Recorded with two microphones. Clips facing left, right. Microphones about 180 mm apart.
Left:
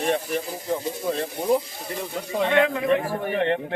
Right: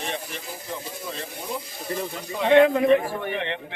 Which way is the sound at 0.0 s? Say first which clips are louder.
Left 8 dB; 50° left (ahead or behind).